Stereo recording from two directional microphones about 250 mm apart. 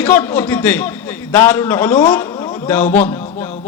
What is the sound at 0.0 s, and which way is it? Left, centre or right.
A man's voice, centre.